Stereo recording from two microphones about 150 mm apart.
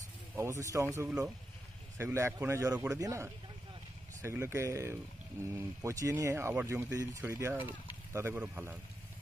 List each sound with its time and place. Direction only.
0.4 s speech: 20° right (ahead or behind)